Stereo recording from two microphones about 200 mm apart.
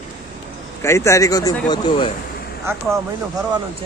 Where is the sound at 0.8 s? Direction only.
15° left (ahead or behind).